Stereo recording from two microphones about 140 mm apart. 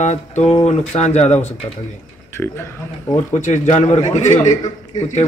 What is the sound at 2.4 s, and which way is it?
Speech, 10° left (ahead or behind).